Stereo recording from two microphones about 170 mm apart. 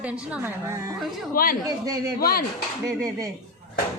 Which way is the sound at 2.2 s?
65° left (ahead or behind).